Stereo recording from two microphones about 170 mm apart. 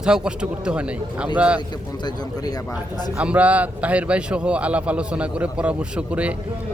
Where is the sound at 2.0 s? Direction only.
25° left (ahead or behind).